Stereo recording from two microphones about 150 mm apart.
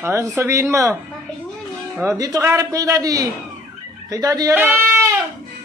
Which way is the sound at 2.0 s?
20° right (ahead or behind).